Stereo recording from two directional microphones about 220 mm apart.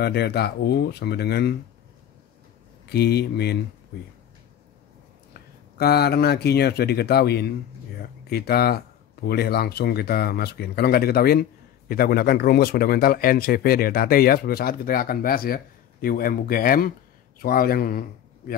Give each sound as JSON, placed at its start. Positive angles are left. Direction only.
{"t": 0.0, "sound": "speech", "side_deg": 50}
{"t": 2.9, "sound": "speech", "side_deg": 50}
{"t": 5.8, "sound": "speech", "side_deg": 45}